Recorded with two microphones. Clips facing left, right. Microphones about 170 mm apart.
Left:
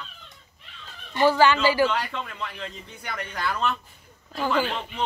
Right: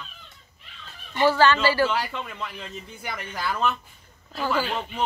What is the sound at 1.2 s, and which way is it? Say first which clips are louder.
Speech: even; 15° left (ahead or behind).